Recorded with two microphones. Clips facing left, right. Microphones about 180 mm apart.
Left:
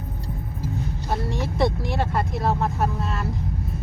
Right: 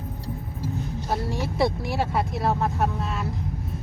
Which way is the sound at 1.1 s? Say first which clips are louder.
Even; centre (ahead or behind).